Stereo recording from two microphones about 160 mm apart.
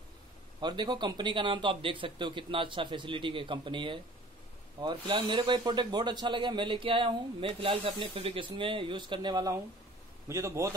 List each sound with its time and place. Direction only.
0.6 s a man's voice: 25° right (ahead or behind)